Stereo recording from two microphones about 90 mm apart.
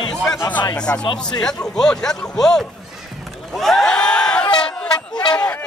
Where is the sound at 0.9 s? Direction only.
25° left (ahead or behind).